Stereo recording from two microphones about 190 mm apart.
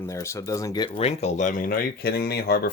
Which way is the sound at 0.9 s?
35° left (ahead or behind).